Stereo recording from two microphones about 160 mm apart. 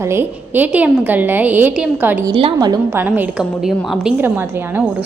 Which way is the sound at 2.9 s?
10° right (ahead or behind).